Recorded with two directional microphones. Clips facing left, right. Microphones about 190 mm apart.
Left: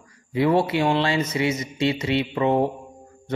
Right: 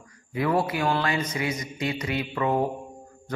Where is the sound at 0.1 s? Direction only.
25° left (ahead or behind).